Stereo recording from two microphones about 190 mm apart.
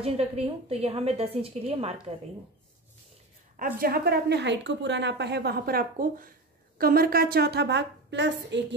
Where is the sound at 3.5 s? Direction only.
50° right (ahead or behind); by 8.7 s 65° right (ahead or behind).